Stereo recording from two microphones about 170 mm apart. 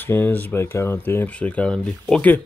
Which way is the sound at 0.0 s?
10° left (ahead or behind).